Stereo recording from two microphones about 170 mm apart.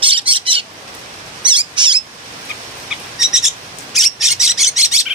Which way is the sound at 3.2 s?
5° right (ahead or behind).